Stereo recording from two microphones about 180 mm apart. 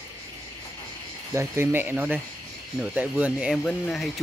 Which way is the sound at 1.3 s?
15° right (ahead or behind).